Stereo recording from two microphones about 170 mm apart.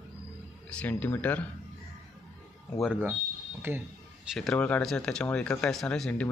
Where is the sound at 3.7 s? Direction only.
15° right (ahead or behind).